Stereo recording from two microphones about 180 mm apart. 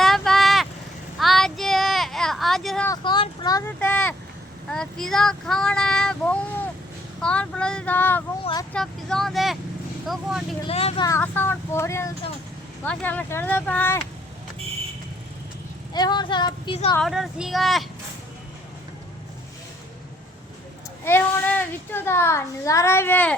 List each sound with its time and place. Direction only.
0.0 s vehicle: centre (ahead or behind)
1.2 s a sound: centre (ahead or behind)
2.8 s a sound: 20° left (ahead or behind)
4.7 s child singing: 5° left (ahead or behind)
7.2 s speech: 5° left (ahead or behind)
8.7 s child singing: 5° left (ahead or behind)
10.6 s speech: 35° left (ahead or behind)
11.2 s speech: 10° left (ahead or behind)
15.9 s speech: 25° left (ahead or behind)
17.0 s child singing: centre (ahead or behind)
21.0 s a child's voice: 10° left (ahead or behind)